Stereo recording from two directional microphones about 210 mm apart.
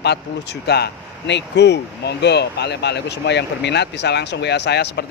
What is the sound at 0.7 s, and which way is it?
Speech, 50° left (ahead or behind).